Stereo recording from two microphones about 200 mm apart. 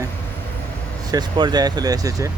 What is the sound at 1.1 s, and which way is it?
Speech, 20° right (ahead or behind).